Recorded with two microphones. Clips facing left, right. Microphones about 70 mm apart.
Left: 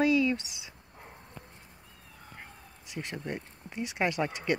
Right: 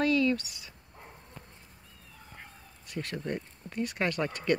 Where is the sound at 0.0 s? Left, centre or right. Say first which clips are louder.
Left 1 dB; centre.